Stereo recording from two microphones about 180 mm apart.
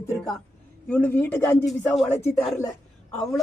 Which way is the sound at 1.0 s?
10° left (ahead or behind).